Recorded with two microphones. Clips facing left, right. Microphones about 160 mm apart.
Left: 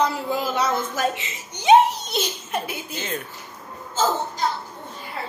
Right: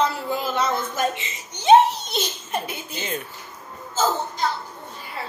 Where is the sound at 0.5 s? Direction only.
10° left (ahead or behind).